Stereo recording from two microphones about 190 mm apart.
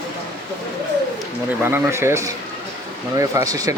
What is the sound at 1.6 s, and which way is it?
Speech, 15° right (ahead or behind).